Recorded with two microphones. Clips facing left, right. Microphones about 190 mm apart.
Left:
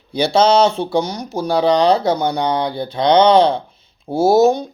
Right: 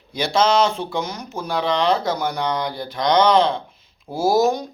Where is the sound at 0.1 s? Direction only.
30° left (ahead or behind).